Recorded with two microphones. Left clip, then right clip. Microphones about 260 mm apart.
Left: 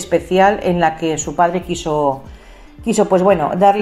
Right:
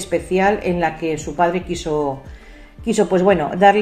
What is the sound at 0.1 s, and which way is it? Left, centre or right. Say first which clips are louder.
A woman's voice: left 4 dB; left.